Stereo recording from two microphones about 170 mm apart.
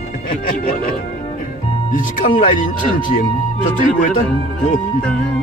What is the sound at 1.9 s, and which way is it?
Speech, 50° left (ahead or behind).